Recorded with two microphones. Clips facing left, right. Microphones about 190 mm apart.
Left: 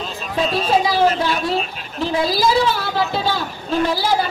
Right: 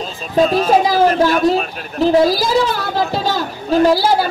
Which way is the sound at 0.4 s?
50° right (ahead or behind).